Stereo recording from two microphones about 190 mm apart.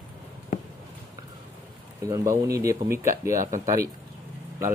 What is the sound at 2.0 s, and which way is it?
Speech, 20° right (ahead or behind).